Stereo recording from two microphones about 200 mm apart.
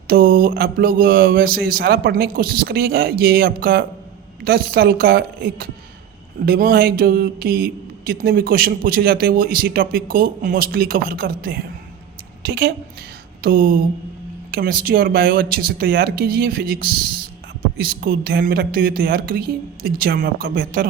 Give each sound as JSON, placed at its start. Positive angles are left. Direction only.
{"t": 0.1, "sound": "speech", "side_deg": -45}